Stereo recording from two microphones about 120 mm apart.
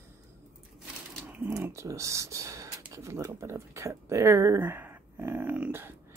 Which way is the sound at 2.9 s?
25° right (ahead or behind).